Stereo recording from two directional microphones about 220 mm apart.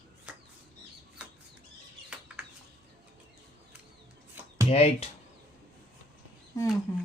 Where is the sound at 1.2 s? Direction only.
5° right (ahead or behind).